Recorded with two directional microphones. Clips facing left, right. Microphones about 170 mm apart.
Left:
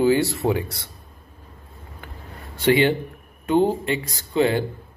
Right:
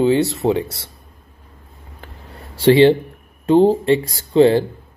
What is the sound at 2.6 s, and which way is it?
Speech, 30° right (ahead or behind).